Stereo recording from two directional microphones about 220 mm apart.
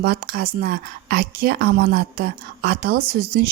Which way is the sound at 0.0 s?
45° right (ahead or behind).